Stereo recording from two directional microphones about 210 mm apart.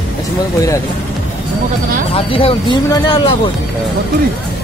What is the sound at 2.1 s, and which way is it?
Speech, 25° left (ahead or behind).